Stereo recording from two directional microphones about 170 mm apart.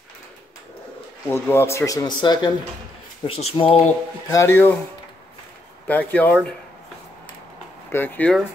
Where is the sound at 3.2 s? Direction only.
35° left (ahead or behind).